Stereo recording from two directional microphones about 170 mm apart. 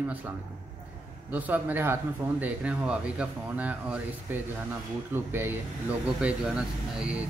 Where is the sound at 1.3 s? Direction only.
10° right (ahead or behind).